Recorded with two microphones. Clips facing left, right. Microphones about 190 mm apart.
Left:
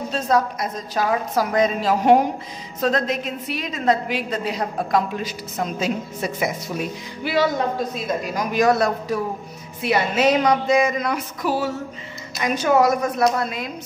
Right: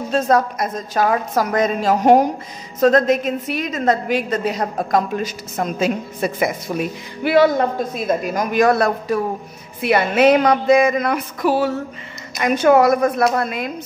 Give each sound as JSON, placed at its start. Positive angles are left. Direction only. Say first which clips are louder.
{"t": 0.1, "sound": "a woman's voice", "louder": "right 4 dB", "side_deg": -50}